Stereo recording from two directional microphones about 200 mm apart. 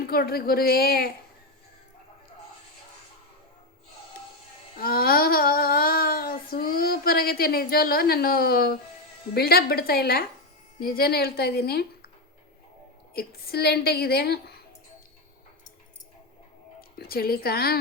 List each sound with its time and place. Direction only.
0.0 s a woman's voice: 50° left (ahead or behind)
4.8 s child singing: 50° left (ahead or behind)
9.3 s a woman's voice: 50° left (ahead or behind)
13.1 s a woman's voice: 50° left (ahead or behind)
17.0 s a woman's voice: 50° left (ahead or behind)